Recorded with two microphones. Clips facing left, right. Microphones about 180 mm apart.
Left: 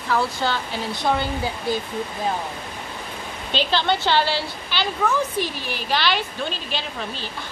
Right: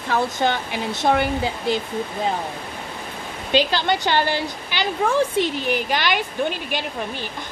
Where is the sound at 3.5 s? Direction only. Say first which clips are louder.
Right 2 dB; 10° right (ahead or behind).